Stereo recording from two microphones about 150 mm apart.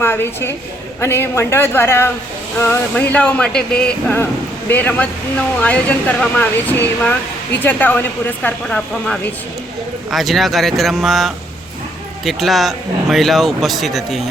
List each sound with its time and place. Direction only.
0.0 s speech: 15° left (ahead or behind)
10.1 s speech: centre (ahead or behind)